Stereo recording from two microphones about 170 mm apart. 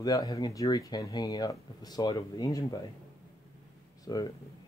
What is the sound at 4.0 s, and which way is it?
Speech, 20° left (ahead or behind).